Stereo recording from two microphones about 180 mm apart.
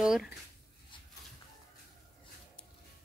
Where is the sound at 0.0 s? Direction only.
5° right (ahead or behind).